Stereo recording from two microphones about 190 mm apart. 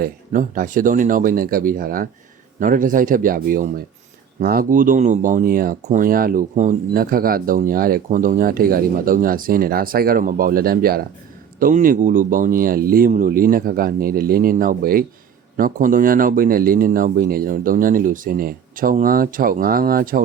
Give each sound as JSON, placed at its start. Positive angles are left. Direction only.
{"t": 0.0, "sound": "speech", "side_deg": -45}